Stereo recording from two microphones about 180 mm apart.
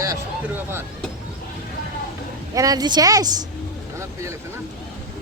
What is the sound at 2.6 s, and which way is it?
Speech, 20° right (ahead or behind).